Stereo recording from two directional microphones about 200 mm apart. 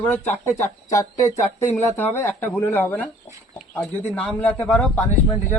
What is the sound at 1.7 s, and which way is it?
A man's voice, 10° left (ahead or behind).